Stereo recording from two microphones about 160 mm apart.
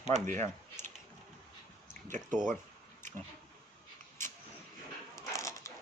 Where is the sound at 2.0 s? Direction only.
50° right (ahead or behind).